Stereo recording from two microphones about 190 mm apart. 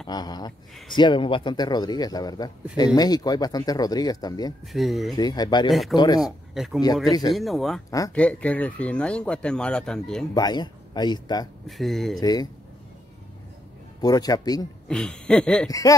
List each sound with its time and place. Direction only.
0.1 s speech: 20° left (ahead or behind)
4.7 s speech: centre (ahead or behind)
5.1 s speech: 20° left (ahead or behind)
5.7 s speech: centre (ahead or behind)
5.9 s speech: 20° left (ahead or behind)
6.2 s speech: centre (ahead or behind)
7.1 s speech: 20° left (ahead or behind)
7.3 s speech: centre (ahead or behind)
10.3 s speech: 20° left (ahead or behind)
11.6 s speech: centre (ahead or behind)
12.2 s speech: 20° left (ahead or behind)
14.0 s speech: 20° left (ahead or behind)
14.9 s speech: 5° left (ahead or behind)